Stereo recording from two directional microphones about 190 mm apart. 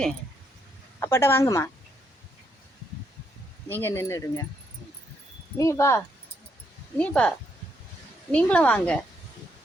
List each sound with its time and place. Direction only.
0.9 s a woman's voice: 15° left (ahead or behind)
3.7 s a woman's voice: 10° left (ahead or behind)
5.5 s a woman's voice: 15° left (ahead or behind)
7.0 s a woman's voice: 5° left (ahead or behind)